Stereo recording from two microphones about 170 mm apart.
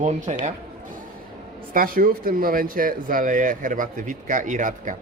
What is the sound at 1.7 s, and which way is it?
Speech, 60° right (ahead or behind).